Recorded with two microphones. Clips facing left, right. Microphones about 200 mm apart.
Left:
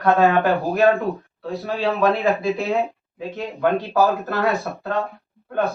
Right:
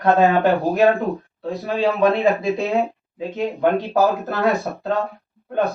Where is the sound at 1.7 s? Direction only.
15° right (ahead or behind).